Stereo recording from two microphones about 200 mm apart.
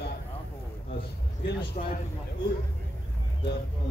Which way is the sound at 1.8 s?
40° left (ahead or behind).